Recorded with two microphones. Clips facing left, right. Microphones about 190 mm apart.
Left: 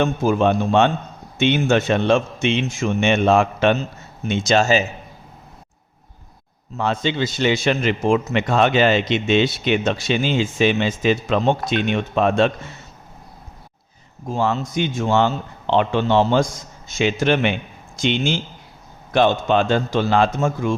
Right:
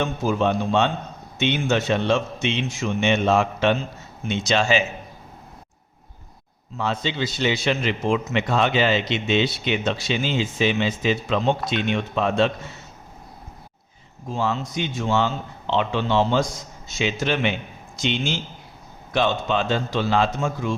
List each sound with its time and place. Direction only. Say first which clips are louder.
0.0 s a man's voice: left 4 dB; 55° left (ahead or behind)
6.7 s a man's voice: left 4 dB; 50° left (ahead or behind)
14.3 s a man's voice: left 4 dB; 45° left (ahead or behind)
19.1 s a man's voice: left 5 dB; 50° left (ahead or behind)